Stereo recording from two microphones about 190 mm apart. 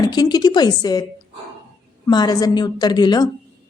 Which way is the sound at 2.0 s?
20° left (ahead or behind).